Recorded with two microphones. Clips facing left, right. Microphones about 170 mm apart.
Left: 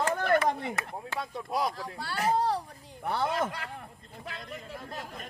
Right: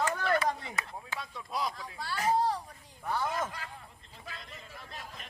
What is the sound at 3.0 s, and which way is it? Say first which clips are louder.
Speech: left 4 dB; 65° left (ahead or behind).